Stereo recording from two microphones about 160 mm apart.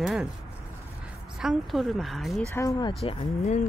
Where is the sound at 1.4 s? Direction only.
Centre (ahead or behind).